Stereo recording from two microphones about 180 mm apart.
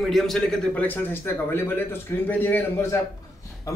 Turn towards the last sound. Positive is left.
turn(degrees=15)  # may be behind; listen again after turning